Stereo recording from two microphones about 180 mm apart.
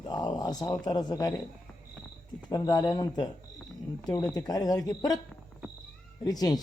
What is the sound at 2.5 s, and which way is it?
Speech, 20° left (ahead or behind).